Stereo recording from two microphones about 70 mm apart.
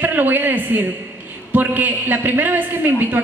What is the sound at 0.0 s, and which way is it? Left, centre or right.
A man's voice, right.